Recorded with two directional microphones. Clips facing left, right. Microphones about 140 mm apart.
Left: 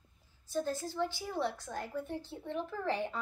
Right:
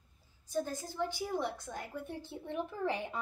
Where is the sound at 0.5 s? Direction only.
15° right (ahead or behind).